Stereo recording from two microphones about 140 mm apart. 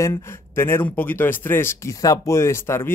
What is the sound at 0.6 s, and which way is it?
Speech, 15° left (ahead or behind).